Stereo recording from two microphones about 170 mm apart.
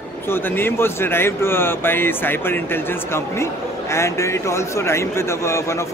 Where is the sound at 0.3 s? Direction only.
15° left (ahead or behind).